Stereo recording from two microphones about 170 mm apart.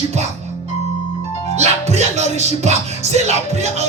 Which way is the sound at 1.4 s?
40° right (ahead or behind).